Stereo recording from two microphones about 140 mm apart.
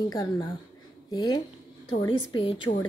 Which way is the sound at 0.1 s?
30° left (ahead or behind).